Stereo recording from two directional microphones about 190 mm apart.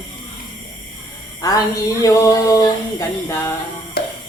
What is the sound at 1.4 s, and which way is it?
A woman's voice, 15° left (ahead or behind).